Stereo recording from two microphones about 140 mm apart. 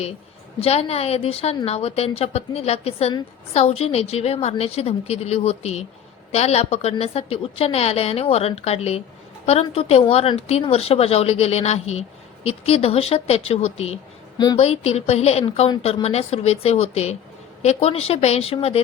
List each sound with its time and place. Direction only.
0.6 s speech: 45° left (ahead or behind)
14.3 s a woman's voice: 30° left (ahead or behind)
14.6 s speech: 50° left (ahead or behind)